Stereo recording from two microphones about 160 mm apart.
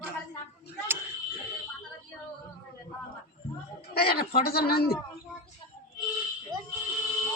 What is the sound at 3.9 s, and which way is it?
Speech, 75° left (ahead or behind).